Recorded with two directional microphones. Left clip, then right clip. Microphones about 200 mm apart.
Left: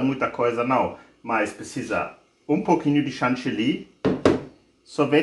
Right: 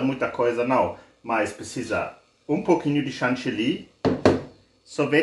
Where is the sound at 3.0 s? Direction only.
25° left (ahead or behind).